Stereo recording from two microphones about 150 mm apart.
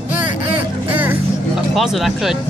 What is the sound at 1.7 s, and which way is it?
Speech, centre (ahead or behind).